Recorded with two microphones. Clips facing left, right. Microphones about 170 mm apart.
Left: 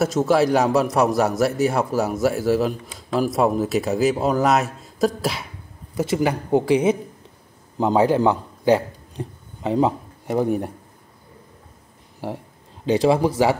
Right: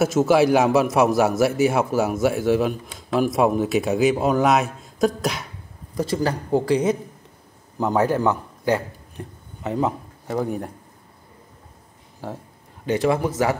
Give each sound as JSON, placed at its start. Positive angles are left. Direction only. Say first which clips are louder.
{"t": 0.0, "sound": "a man's voice", "louder": "right 1 dB", "side_deg": 0}
{"t": 6.0, "sound": "a man's voice", "louder": "left 3 dB", "side_deg": 20}
{"t": 12.9, "sound": "speech", "louder": "left 3 dB", "side_deg": 15}
{"t": 13.2, "sound": "speech", "louder": "left 3 dB", "side_deg": 30}